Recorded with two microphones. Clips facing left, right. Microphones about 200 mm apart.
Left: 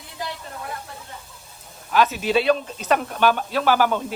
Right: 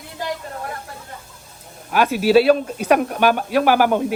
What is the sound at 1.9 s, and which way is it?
Speech, 10° right (ahead or behind).